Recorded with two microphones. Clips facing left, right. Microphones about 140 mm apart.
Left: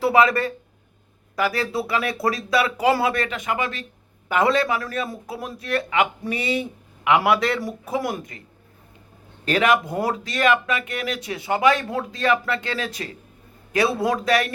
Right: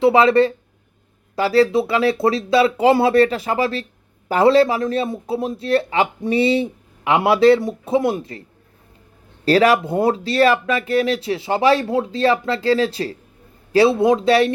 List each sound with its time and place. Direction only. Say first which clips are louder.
0.0 s a man's voice: right 5 dB; 30° right (ahead or behind)